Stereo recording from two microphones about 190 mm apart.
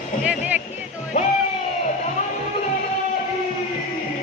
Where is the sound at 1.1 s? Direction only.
35° left (ahead or behind).